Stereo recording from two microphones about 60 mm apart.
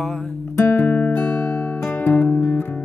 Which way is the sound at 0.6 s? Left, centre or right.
Left.